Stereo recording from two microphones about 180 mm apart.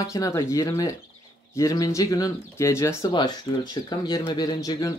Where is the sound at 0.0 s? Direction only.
20° left (ahead or behind).